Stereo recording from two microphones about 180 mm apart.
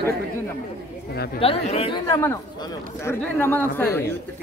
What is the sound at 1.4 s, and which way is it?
Speech, 35° left (ahead or behind).